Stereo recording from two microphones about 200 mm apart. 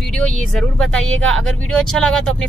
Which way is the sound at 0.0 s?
5° left (ahead or behind).